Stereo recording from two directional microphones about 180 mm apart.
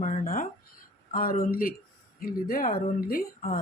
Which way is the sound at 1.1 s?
50° left (ahead or behind).